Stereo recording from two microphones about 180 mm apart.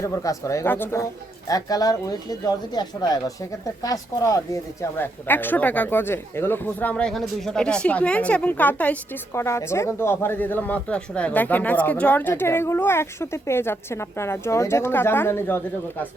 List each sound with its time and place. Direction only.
0.0 s speech: 20° left (ahead or behind)